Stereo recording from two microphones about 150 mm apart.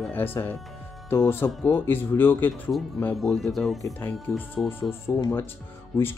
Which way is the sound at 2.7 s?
Centre (ahead or behind).